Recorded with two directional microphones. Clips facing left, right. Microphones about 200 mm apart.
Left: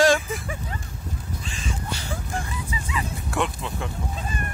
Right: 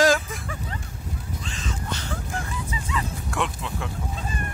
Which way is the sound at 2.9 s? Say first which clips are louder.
Left 1 dB; 5° left (ahead or behind).